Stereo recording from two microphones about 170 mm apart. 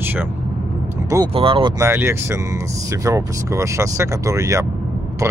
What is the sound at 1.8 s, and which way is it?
Speech, 15° right (ahead or behind).